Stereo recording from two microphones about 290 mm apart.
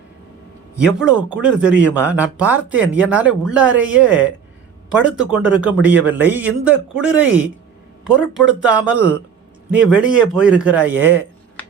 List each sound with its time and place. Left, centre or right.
0.9 s speech: centre